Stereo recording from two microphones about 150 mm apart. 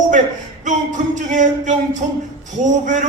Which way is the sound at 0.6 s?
55° right (ahead or behind).